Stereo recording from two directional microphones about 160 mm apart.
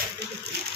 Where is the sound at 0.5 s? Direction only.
90° right.